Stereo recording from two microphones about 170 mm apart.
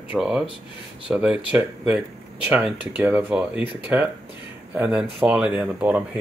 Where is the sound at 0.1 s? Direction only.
5° right (ahead or behind).